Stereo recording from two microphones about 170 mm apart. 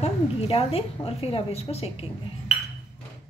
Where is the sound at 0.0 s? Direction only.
35° left (ahead or behind).